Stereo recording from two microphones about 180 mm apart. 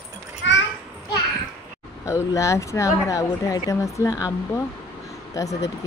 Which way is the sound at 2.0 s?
15° left (ahead or behind).